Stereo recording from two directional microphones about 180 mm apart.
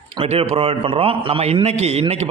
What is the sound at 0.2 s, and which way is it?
A man's voice, 35° right (ahead or behind).